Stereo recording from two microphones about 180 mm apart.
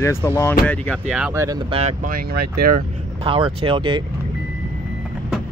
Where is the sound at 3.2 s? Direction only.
30° right (ahead or behind).